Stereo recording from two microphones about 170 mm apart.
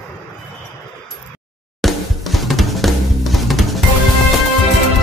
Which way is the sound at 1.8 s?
Centre (ahead or behind).